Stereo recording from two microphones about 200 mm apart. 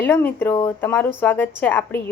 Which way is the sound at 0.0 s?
10° left (ahead or behind).